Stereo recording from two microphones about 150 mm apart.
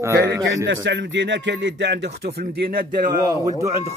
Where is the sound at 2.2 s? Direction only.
90° right.